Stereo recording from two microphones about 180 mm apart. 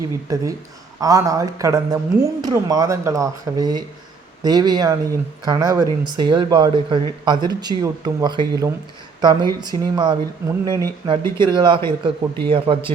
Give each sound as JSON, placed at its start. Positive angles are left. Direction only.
{"t": 0.3, "sound": "a man's voice", "side_deg": -20}